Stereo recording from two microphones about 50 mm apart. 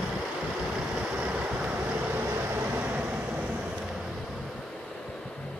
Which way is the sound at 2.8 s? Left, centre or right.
Right.